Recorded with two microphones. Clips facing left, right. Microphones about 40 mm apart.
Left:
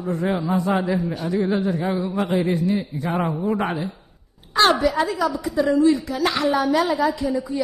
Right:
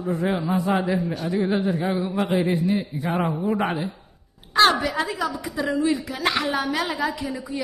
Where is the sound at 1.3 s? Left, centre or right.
Centre.